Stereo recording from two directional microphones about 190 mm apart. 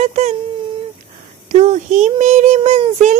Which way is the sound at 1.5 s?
40° right (ahead or behind).